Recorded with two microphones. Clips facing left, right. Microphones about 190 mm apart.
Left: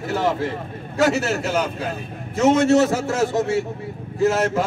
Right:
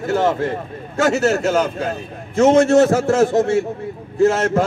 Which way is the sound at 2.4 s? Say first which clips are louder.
Right 4 dB; 50° right (ahead or behind).